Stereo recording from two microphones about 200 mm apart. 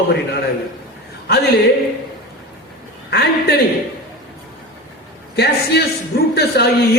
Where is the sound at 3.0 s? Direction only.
55° left (ahead or behind).